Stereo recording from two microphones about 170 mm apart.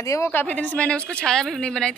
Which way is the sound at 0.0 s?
15° left (ahead or behind).